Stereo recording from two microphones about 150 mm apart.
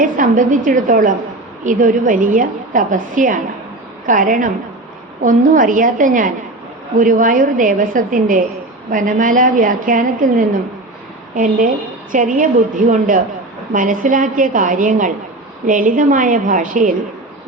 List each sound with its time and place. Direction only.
0.0 s a woman's voice: 60° right (ahead or behind)